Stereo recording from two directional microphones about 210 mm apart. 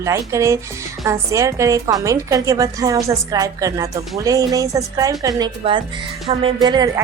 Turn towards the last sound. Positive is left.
turn(degrees=-20)  # may be behind; listen again after turning